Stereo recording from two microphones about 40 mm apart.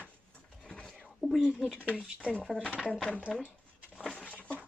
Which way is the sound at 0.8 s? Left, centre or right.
Centre.